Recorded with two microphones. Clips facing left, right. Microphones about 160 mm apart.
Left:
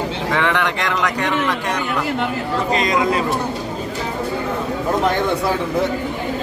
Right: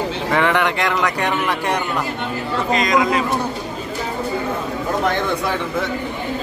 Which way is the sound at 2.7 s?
30° left (ahead or behind).